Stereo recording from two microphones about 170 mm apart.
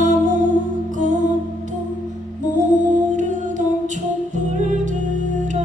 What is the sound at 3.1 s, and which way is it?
Music, 45° right (ahead or behind).